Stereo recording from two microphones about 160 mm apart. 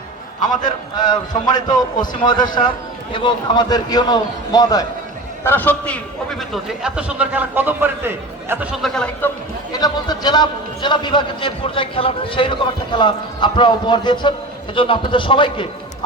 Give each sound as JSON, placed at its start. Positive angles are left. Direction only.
{"t": 0.4, "sound": "a man's voice", "side_deg": 25}
{"t": 5.4, "sound": "a man's voice", "side_deg": 10}
{"t": 6.5, "sound": "a man's voice", "side_deg": -5}
{"t": 8.7, "sound": "speech", "side_deg": 0}
{"t": 9.7, "sound": "a man's voice", "side_deg": 25}